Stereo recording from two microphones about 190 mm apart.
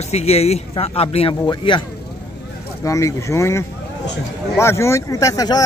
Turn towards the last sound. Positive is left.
turn(degrees=20)  # may be behind; listen again after turning